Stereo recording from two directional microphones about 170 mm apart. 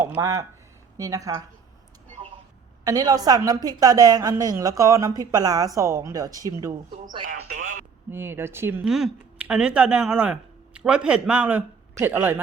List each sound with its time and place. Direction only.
0.2 s speech: 20° right (ahead or behind)
2.8 s speech: 20° right (ahead or behind)
7.3 s speech: 60° right (ahead or behind)
8.1 s speech: 15° right (ahead or behind)